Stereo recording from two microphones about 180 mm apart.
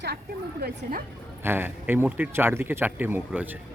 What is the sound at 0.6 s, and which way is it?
Speech, 55° right (ahead or behind).